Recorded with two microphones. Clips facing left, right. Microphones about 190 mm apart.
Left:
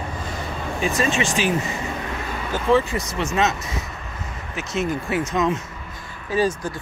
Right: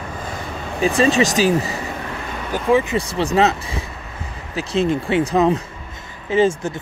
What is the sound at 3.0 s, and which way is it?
Speech, 30° right (ahead or behind).